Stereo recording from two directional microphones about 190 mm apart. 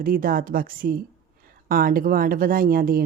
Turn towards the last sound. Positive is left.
turn(degrees=-50)  # may be behind; listen again after turning